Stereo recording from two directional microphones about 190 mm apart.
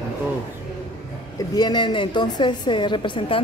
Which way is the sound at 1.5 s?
20° left (ahead or behind).